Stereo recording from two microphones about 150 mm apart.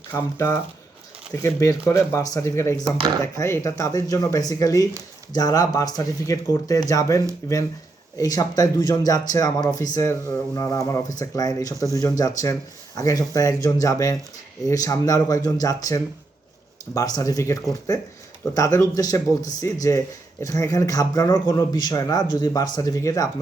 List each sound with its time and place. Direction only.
0.1 s a man's voice: 15° left (ahead or behind)